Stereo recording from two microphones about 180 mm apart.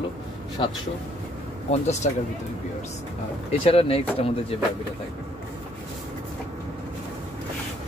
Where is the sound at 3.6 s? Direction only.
30° left (ahead or behind).